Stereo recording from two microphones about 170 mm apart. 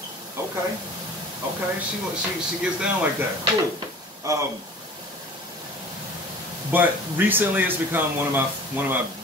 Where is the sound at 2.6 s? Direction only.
5° right (ahead or behind).